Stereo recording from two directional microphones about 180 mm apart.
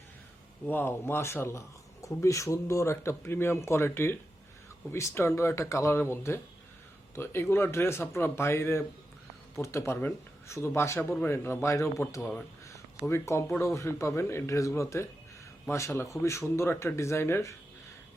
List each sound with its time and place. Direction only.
0.6 s speech: 10° left (ahead or behind)